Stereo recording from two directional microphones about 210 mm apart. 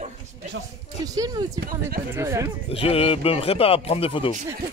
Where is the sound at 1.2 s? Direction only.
15° right (ahead or behind).